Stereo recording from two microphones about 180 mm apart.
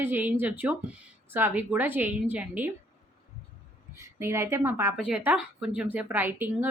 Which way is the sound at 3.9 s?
15° right (ahead or behind).